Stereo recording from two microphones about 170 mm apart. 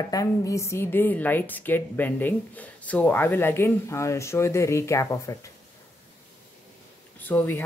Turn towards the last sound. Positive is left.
turn(degrees=10)  # may be behind; listen again after turning